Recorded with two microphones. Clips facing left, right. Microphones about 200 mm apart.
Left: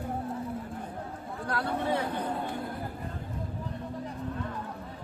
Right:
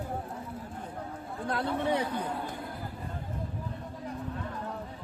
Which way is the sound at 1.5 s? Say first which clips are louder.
Right 1 dB; 20° right (ahead or behind).